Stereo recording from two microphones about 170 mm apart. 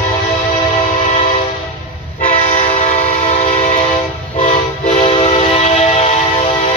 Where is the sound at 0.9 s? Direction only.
45° left (ahead or behind).